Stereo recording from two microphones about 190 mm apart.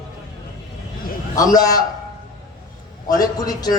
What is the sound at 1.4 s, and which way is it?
Speech, 20° left (ahead or behind).